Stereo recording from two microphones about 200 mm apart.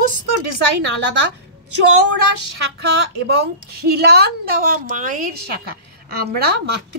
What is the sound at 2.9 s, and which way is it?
A woman's voice, 60° right (ahead or behind).